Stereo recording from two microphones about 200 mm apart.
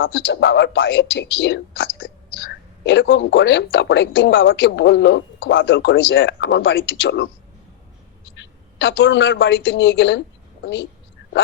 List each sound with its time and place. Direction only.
0.0 s speech: 60° left (ahead or behind)
8.4 s a woman's voice: 65° left (ahead or behind)
11.2 s whispering: 65° left (ahead or behind)